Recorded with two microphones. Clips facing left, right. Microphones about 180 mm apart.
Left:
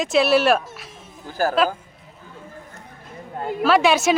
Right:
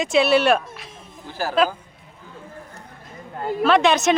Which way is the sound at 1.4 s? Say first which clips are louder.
Left 5 dB; 45° left (ahead or behind).